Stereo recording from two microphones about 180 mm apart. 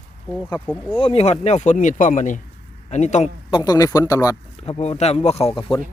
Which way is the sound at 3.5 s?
20° left (ahead or behind).